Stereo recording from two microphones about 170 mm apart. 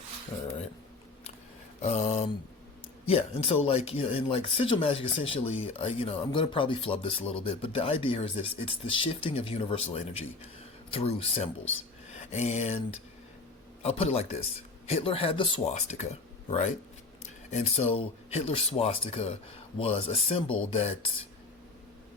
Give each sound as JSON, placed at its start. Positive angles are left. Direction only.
{"t": 1.8, "sound": "speech", "side_deg": 40}
{"t": 12.1, "sound": "a sound", "side_deg": 40}
{"t": 13.8, "sound": "speech", "side_deg": 35}